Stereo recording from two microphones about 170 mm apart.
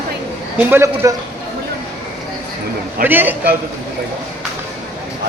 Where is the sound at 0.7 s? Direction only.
15° right (ahead or behind).